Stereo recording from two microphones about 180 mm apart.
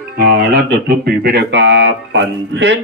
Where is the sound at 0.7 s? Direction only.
60° right (ahead or behind).